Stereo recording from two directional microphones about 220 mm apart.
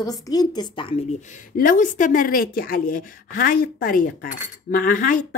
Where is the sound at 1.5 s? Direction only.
40° left (ahead or behind).